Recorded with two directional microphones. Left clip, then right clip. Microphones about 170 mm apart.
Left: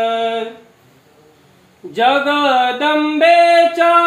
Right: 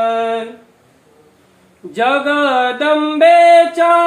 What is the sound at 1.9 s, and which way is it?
Music, 15° right (ahead or behind).